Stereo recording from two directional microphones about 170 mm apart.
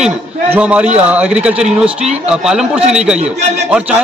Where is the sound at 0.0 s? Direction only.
10° right (ahead or behind).